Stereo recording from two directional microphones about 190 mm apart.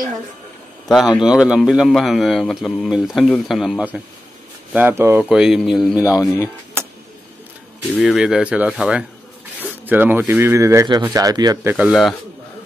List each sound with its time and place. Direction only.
0.8 s a man's voice: centre (ahead or behind)
5.9 s speech: 15° left (ahead or behind)
8.0 s a man's voice: centre (ahead or behind); by 11.7 s 20° right (ahead or behind)
11.7 s a man's voice: 5° right (ahead or behind)